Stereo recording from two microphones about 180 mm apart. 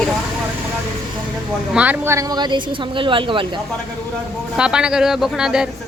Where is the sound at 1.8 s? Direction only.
10° right (ahead or behind); by 3.5 s 30° right (ahead or behind).